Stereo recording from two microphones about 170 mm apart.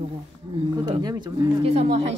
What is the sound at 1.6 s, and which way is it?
Speech, 35° right (ahead or behind).